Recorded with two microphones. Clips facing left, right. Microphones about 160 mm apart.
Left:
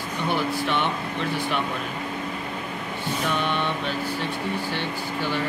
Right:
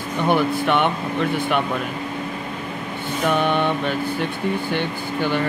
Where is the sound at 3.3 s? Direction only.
55° right (ahead or behind).